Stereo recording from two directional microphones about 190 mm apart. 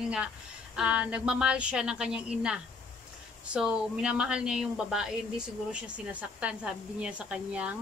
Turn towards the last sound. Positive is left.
turn(degrees=-5)  # may be behind; listen again after turning